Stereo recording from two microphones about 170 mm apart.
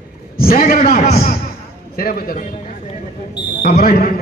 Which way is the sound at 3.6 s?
65° left (ahead or behind).